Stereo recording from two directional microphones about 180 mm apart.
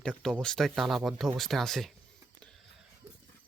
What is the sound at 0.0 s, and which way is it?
Speech, 5° left (ahead or behind).